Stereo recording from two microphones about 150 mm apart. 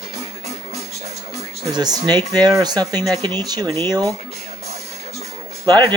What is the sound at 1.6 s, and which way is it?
Speech, 25° right (ahead or behind).